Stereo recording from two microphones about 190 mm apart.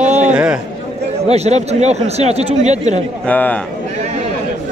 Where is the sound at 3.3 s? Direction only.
10° left (ahead or behind).